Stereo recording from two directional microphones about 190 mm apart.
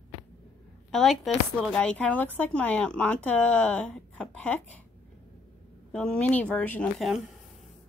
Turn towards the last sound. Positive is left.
turn(degrees=5)  # may be behind; listen again after turning